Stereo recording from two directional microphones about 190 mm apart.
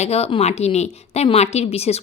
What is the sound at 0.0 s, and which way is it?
A woman's voice, 35° left (ahead or behind).